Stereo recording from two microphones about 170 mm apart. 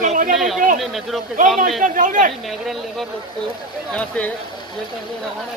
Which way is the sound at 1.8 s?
50° right (ahead or behind).